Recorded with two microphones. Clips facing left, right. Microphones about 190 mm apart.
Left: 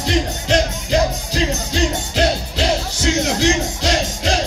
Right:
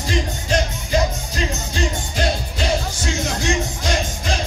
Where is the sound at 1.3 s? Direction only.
75° left (ahead or behind).